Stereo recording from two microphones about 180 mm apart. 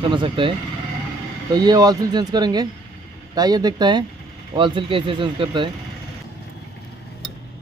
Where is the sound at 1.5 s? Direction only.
20° right (ahead or behind).